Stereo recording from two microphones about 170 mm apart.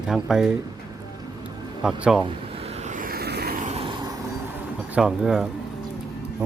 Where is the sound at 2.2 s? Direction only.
40° right (ahead or behind); by 3.7 s 60° right (ahead or behind).